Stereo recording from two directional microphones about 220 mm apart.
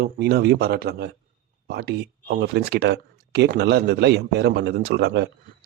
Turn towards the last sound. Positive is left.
turn(degrees=-50)  # may be behind; listen again after turning